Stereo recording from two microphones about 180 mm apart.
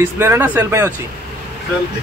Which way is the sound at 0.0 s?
15° right (ahead or behind).